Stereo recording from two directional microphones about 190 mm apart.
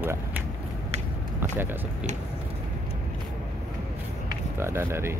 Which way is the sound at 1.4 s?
10° right (ahead or behind).